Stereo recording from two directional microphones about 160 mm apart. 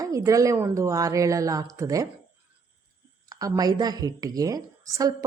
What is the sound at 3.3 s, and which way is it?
Speech, 20° right (ahead or behind).